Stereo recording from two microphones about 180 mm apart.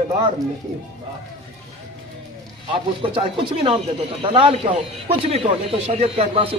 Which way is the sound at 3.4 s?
25° right (ahead or behind).